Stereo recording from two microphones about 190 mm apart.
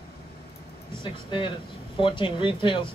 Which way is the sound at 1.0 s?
25° left (ahead or behind).